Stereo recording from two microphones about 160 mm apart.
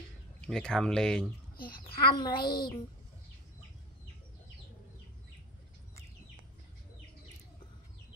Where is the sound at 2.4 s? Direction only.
30° left (ahead or behind).